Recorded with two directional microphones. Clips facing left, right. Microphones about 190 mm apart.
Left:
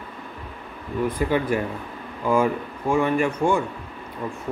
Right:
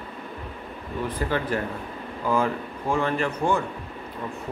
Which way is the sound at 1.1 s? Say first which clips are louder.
Left 3 dB; 10° left (ahead or behind).